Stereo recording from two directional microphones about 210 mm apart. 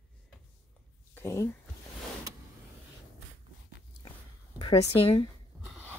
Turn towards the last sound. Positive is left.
turn(degrees=25)  # may be behind; listen again after turning